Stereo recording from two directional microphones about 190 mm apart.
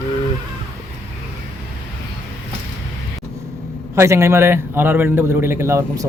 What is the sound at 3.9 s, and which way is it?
A man's voice, 15° right (ahead or behind).